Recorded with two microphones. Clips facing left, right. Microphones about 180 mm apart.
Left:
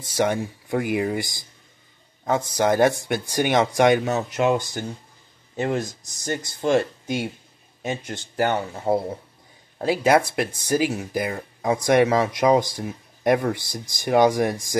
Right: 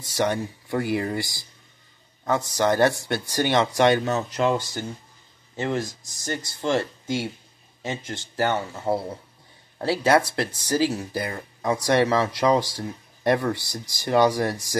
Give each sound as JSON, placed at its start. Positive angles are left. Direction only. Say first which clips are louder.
{"t": 0.0, "sound": "speech", "louder": "left 2 dB", "side_deg": 20}
{"t": 2.5, "sound": "speech", "louder": "left 2 dB", "side_deg": 15}